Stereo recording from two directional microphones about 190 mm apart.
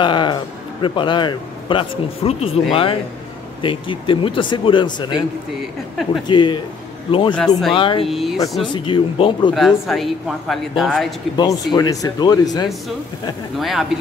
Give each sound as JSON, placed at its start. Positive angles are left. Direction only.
{"t": 0.0, "sound": "music", "side_deg": 25}
{"t": 0.8, "sound": "speech", "side_deg": 25}
{"t": 6.2, "sound": "speech", "side_deg": 25}
{"t": 8.1, "sound": "speech", "side_deg": 0}
{"t": 8.7, "sound": "speech", "side_deg": 25}
{"t": 9.5, "sound": "speech", "side_deg": 0}
{"t": 11.3, "sound": "speech", "side_deg": 20}
{"t": 13.6, "sound": "speech", "side_deg": 0}